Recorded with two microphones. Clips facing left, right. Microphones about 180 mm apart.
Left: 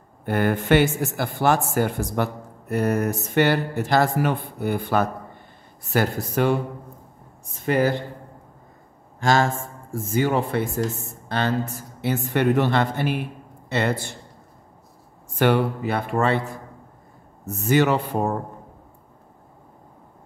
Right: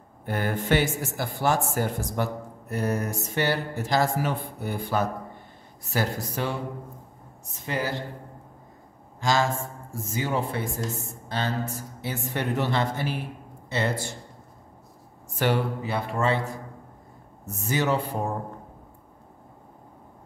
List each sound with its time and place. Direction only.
0.2 s speech: 60° left (ahead or behind)
9.2 s speech: 55° left (ahead or behind)
10.1 s speech: 65° left (ahead or behind)
15.3 s speech: 60° left (ahead or behind)
17.6 s speech: 65° left (ahead or behind)